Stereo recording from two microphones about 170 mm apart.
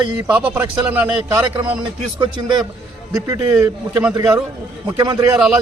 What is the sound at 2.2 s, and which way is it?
Speech, 25° right (ahead or behind).